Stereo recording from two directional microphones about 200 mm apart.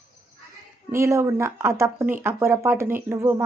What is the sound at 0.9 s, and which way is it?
Speech, 15° right (ahead or behind).